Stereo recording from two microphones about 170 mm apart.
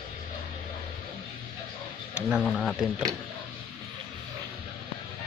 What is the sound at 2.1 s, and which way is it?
Speech, 5° right (ahead or behind).